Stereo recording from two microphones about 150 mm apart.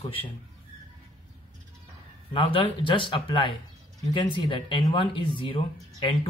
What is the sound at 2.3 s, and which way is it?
Speech, 35° left (ahead or behind).